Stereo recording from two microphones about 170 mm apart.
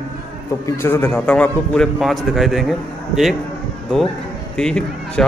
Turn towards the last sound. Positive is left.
turn(degrees=5)  # may be behind; listen again after turning